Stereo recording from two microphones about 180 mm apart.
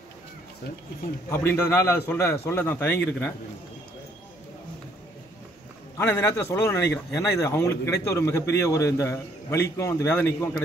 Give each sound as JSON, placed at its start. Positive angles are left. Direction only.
{"t": 1.3, "sound": "a man's voice", "side_deg": 15}
{"t": 5.9, "sound": "a man's voice", "side_deg": 15}